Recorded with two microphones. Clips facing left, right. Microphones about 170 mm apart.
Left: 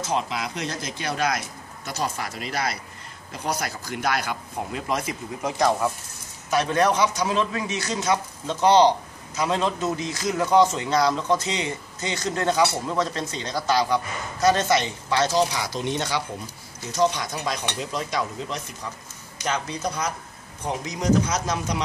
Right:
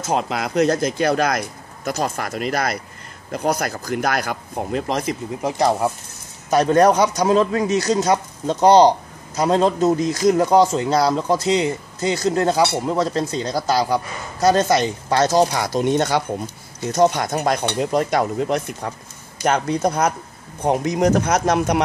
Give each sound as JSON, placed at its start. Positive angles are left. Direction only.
{"t": 0.0, "sound": "stir", "side_deg": -50}
{"t": 4.8, "sound": "a man's voice", "side_deg": -35}
{"t": 6.5, "sound": "a man's voice", "side_deg": -45}
{"t": 16.9, "sound": "stir", "side_deg": -50}
{"t": 19.4, "sound": "speech", "side_deg": -55}